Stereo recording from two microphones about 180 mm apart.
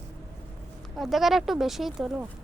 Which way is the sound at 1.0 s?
Centre (ahead or behind).